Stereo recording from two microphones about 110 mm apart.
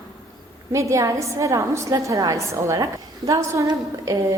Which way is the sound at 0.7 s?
25° right (ahead or behind).